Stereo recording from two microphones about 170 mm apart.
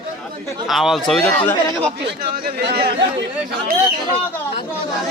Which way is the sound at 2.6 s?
70° right (ahead or behind).